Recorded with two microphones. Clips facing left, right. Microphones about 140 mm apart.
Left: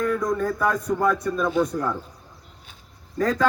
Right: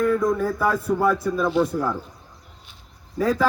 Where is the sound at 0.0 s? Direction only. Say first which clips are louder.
Right 3 dB; 5° right (ahead or behind).